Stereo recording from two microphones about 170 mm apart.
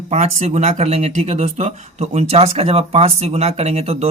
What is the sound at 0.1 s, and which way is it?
Speech, 40° right (ahead or behind).